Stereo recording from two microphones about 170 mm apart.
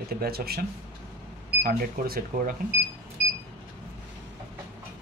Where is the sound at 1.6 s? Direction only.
60° right (ahead or behind).